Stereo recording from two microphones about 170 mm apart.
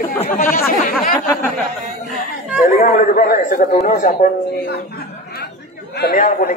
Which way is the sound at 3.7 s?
45° left (ahead or behind).